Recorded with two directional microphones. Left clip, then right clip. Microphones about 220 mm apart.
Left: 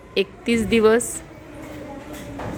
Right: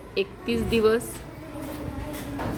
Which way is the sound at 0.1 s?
30° left (ahead or behind).